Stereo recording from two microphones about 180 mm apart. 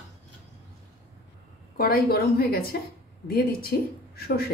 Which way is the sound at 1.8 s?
55° left (ahead or behind).